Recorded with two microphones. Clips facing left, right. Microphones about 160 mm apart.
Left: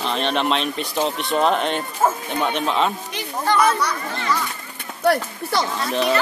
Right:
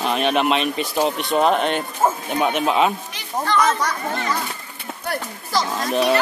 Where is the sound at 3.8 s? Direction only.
45° right (ahead or behind).